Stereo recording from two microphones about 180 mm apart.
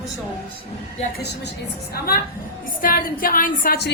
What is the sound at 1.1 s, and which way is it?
Speech, 65° left (ahead or behind).